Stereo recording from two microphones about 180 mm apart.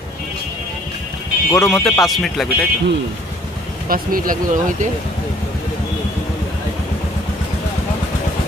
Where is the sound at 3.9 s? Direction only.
50° right (ahead or behind).